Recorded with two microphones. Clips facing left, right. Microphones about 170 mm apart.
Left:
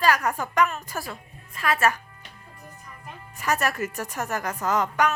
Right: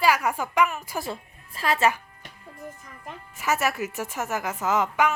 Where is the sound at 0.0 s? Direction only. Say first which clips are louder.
Even; 10° right (ahead or behind).